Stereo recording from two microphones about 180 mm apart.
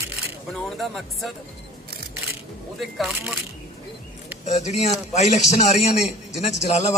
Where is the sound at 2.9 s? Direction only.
Centre (ahead or behind).